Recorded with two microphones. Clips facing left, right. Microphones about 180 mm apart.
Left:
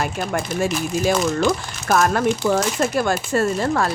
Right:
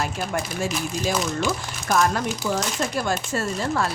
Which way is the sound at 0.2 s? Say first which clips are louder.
Left 3 dB; 60° left (ahead or behind).